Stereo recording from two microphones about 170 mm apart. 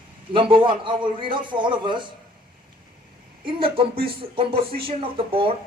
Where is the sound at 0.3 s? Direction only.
30° right (ahead or behind).